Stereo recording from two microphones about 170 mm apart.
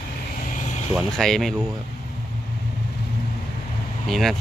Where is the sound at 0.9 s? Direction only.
Centre (ahead or behind).